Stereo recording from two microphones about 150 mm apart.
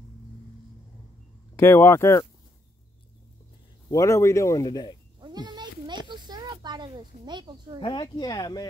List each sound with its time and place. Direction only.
1.6 s speech: 15° left (ahead or behind)
3.9 s speech: 20° left (ahead or behind)
5.2 s a sound: 30° right (ahead or behind)
7.8 s speech: 30° left (ahead or behind)